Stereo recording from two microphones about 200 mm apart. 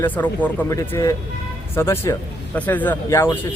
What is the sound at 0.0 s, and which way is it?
Speech, 10° left (ahead or behind).